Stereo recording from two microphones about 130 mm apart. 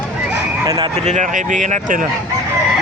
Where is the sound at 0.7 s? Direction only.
30° right (ahead or behind).